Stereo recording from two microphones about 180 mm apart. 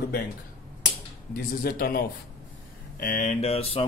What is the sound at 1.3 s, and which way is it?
A man's voice, 55° left (ahead or behind).